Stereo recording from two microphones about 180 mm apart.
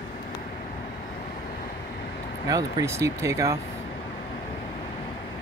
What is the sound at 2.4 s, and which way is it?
Speech, 20° right (ahead or behind).